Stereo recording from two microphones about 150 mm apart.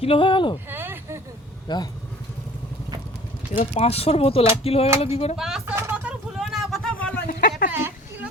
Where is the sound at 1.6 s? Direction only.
30° left (ahead or behind).